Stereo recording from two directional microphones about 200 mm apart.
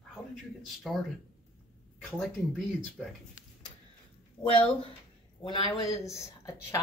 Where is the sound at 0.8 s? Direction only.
Centre (ahead or behind).